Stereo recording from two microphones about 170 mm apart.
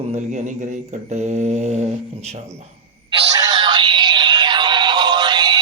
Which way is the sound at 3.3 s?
25° right (ahead or behind).